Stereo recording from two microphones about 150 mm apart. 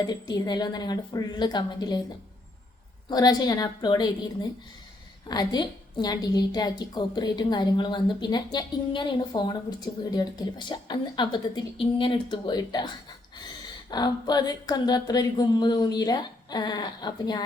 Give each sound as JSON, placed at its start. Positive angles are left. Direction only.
{"t": 0.0, "sound": "a woman's voice", "side_deg": 25}
{"t": 3.1, "sound": "a woman's voice", "side_deg": 25}
{"t": 5.3, "sound": "a woman's voice", "side_deg": 25}
{"t": 13.9, "sound": "a woman's voice", "side_deg": 25}